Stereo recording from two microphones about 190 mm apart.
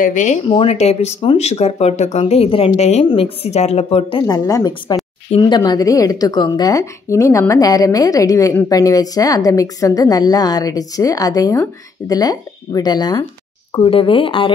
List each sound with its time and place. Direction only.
0.0 s speech: 40° left (ahead or behind)
0.5 s a woman's voice: 30° left (ahead or behind)